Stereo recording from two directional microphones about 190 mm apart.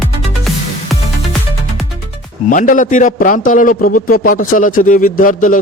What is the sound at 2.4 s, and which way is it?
A man's voice, 45° left (ahead or behind).